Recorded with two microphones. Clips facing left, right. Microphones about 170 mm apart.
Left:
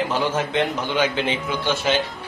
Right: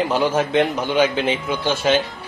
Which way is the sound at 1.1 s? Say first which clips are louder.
Right 3 dB; 20° left (ahead or behind).